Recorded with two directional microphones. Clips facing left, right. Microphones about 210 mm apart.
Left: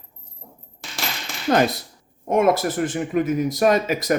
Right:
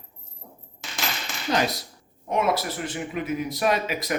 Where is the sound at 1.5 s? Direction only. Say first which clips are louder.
Left 6 dB; 50° left (ahead or behind).